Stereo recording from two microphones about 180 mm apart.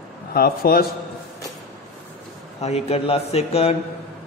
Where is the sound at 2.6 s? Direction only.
35° left (ahead or behind).